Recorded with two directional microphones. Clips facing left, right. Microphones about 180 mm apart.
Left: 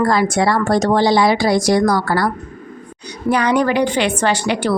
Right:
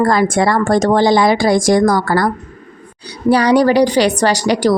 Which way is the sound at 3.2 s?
35° right (ahead or behind).